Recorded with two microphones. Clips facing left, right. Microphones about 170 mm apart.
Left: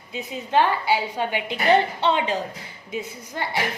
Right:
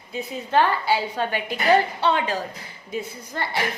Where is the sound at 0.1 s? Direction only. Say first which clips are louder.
Even; 15° left (ahead or behind).